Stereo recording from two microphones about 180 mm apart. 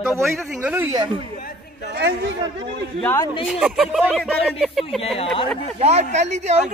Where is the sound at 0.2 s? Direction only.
5° right (ahead or behind).